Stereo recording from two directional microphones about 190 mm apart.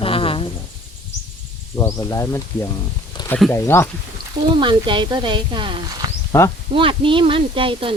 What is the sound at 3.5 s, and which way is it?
Speech, 15° left (ahead or behind).